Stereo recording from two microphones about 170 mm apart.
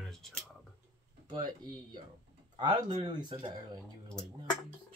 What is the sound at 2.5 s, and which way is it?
Speech, 25° right (ahead or behind).